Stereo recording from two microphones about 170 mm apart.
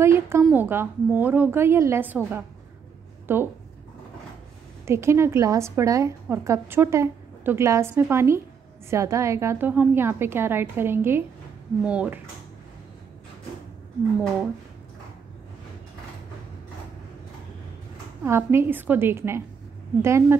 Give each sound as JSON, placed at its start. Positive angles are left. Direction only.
{"t": 0.0, "sound": "a woman's voice", "side_deg": -15}
{"t": 4.8, "sound": "a woman's voice", "side_deg": -15}
{"t": 18.2, "sound": "a woman's voice", "side_deg": -15}